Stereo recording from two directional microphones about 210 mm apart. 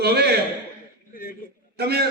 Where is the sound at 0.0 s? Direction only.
50° right (ahead or behind).